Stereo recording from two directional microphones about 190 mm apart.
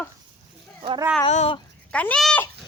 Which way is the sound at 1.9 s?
5° left (ahead or behind).